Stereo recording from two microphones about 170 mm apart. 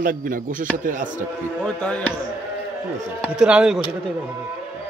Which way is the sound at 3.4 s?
5° right (ahead or behind).